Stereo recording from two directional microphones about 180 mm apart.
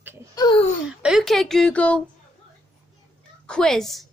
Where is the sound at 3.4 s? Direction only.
5° left (ahead or behind).